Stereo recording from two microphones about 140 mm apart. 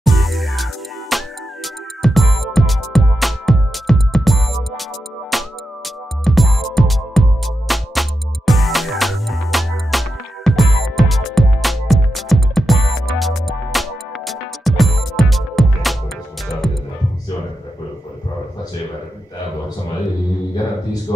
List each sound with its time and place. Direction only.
0.0 s music: centre (ahead or behind)